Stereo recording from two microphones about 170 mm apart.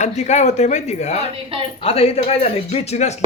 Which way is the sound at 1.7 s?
35° left (ahead or behind).